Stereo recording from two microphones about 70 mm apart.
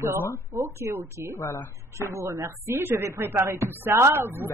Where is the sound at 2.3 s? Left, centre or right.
Right.